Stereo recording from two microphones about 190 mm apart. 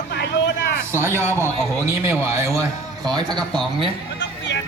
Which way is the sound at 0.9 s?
15° right (ahead or behind).